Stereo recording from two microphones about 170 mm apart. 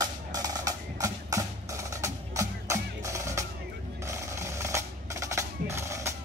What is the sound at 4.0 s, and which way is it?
Percussion, 15° right (ahead or behind).